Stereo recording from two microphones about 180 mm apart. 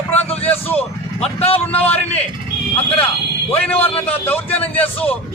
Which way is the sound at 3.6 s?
10° left (ahead or behind).